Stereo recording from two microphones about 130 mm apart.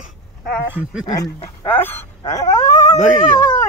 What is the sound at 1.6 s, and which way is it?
Speech, 15° left (ahead or behind).